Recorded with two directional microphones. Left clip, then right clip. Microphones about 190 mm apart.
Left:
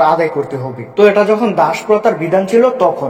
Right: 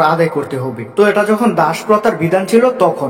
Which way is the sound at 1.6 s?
30° right (ahead or behind).